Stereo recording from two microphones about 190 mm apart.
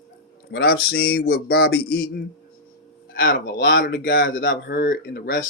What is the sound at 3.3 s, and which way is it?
Speech, 50° left (ahead or behind).